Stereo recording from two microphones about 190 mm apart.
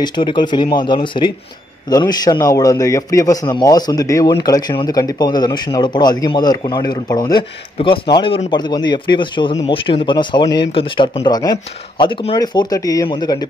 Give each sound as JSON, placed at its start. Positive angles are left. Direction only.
{"t": 0.0, "sound": "a man's voice", "side_deg": 25}